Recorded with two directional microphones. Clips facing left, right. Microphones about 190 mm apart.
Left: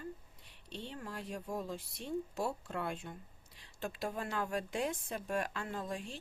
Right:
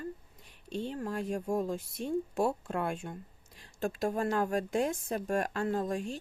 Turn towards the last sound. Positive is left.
turn(degrees=-45)  # may be behind; listen again after turning